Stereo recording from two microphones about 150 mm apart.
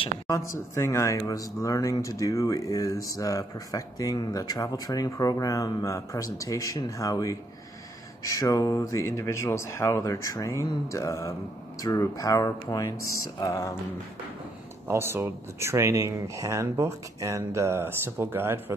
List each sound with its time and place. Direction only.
0.3 s a man's voice: 20° left (ahead or behind)
14.9 s speech: 15° right (ahead or behind)